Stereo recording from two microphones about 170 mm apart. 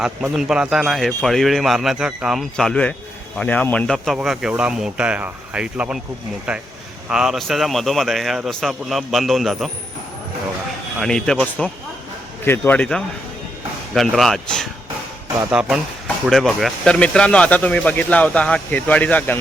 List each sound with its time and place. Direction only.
0.0 s a man's voice: 5° right (ahead or behind)
7.1 s a man's voice: 5° right (ahead or behind)
11.0 s a man's voice: 5° left (ahead or behind)